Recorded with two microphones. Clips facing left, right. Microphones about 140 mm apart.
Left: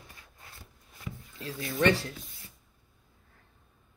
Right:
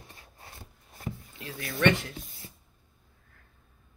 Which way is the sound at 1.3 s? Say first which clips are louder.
Left 4 dB; 30° left (ahead or behind).